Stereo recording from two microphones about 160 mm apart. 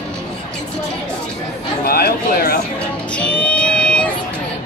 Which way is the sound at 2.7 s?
5° left (ahead or behind).